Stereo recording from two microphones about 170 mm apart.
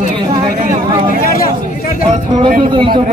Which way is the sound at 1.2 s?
60° left (ahead or behind).